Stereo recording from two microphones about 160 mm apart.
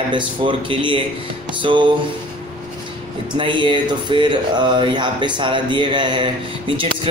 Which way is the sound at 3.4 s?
30° right (ahead or behind).